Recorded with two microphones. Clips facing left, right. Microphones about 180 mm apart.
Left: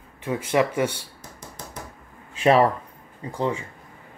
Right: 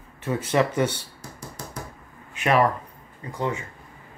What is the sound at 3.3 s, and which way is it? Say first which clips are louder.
Speech: left 2 dB; 30° left (ahead or behind).